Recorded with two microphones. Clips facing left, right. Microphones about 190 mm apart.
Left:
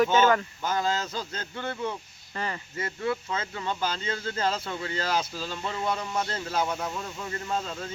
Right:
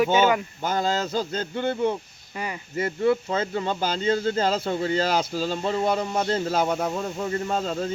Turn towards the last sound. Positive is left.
turn(degrees=-35)  # may be behind; listen again after turning